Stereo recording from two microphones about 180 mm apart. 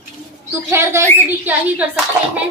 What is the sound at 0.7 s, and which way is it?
Speech, 15° right (ahead or behind).